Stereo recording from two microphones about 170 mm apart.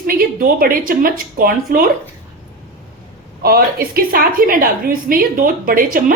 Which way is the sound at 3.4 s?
60° right (ahead or behind).